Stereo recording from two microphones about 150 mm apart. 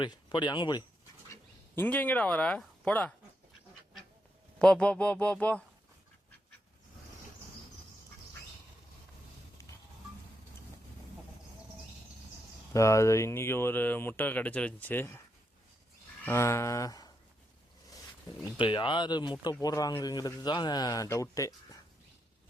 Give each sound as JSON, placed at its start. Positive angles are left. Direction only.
{"t": 0.0, "sound": "speech", "side_deg": 30}
{"t": 1.3, "sound": "speech", "side_deg": 15}
{"t": 4.6, "sound": "speech", "side_deg": 5}
{"t": 12.7, "sound": "speech", "side_deg": 20}
{"t": 16.2, "sound": "a man's voice", "side_deg": 20}
{"t": 18.5, "sound": "a man's voice", "side_deg": 35}